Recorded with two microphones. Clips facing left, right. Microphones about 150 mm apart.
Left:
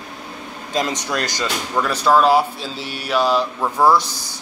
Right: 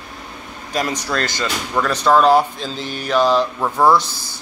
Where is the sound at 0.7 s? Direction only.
20° left (ahead or behind).